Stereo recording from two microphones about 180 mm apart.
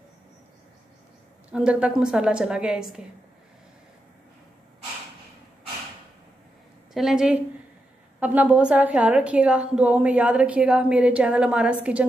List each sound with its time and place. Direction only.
1.5 s a woman's voice: 5° right (ahead or behind)
6.9 s a woman's voice: centre (ahead or behind)